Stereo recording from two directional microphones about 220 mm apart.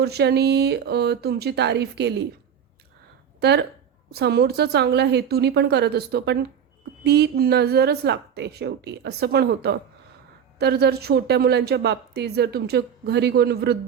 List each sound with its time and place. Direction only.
0.0 s a woman's voice: 50° right (ahead or behind)
3.4 s a woman's voice: 50° right (ahead or behind)